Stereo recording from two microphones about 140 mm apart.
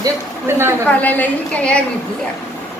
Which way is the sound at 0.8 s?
10° left (ahead or behind).